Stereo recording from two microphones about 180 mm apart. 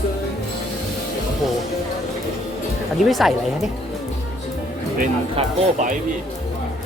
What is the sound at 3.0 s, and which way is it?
Speech, centre (ahead or behind).